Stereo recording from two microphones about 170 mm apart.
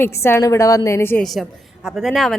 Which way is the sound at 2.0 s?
Centre (ahead or behind).